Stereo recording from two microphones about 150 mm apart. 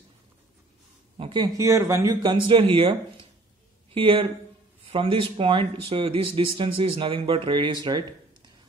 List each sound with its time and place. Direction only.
1.1 s speech: 35° right (ahead or behind)
2.4 s speech: 35° right (ahead or behind)